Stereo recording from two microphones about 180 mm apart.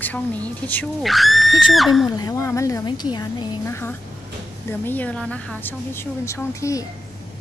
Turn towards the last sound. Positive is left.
turn(degrees=15)  # may be behind; listen again after turning